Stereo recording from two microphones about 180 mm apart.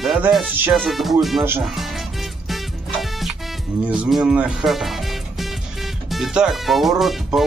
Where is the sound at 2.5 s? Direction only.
Centre (ahead or behind).